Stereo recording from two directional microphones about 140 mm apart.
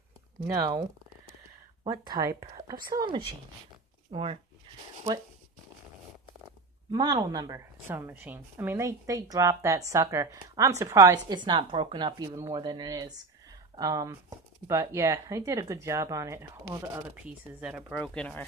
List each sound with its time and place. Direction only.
0.5 s speech: 25° right (ahead or behind)
1.9 s speech: 25° right (ahead or behind); by 4.4 s 40° right (ahead or behind)
6.9 s speech: 30° right (ahead or behind)
7.9 s speech: 15° right (ahead or behind)
17.1 s speech: 10° right (ahead or behind)
17.9 s speech: 5° left (ahead or behind)